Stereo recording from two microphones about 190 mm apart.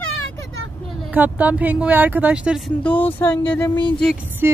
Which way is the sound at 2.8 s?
10° left (ahead or behind).